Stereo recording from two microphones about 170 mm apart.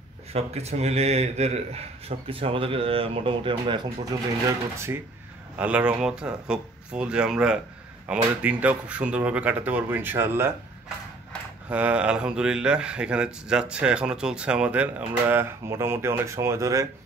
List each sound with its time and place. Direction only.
0.3 s a man's voice: 40° right (ahead or behind)
4.5 s speech: 15° right (ahead or behind)
11.7 s speech: 5° right (ahead or behind)